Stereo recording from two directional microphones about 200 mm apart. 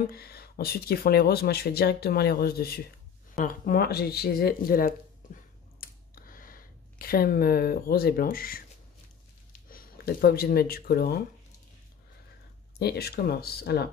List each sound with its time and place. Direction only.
0.1 s speech: 50° left (ahead or behind)
5.8 s a sound: 45° left (ahead or behind)
9.5 s speech: 45° left (ahead or behind)
12.7 s speech: 55° left (ahead or behind)